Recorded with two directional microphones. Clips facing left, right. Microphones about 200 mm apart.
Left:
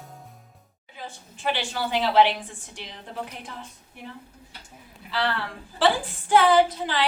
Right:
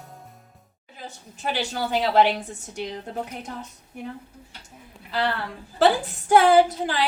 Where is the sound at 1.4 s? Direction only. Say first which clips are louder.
Right 1 dB; 40° right (ahead or behind).